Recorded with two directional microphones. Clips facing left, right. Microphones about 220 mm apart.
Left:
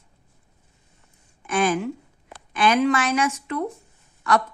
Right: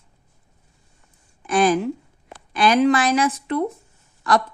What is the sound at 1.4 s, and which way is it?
A woman's voice, 35° right (ahead or behind).